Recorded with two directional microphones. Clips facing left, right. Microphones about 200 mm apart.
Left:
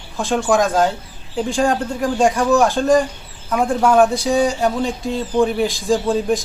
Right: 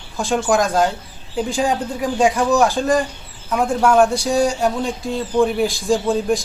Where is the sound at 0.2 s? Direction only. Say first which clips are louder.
Left 1 dB; centre (ahead or behind).